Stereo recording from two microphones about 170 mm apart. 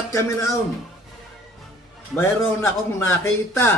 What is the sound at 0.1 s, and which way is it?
Speech, 20° left (ahead or behind).